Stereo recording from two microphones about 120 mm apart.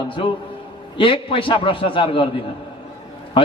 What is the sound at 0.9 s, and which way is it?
A man's voice, 45° left (ahead or behind).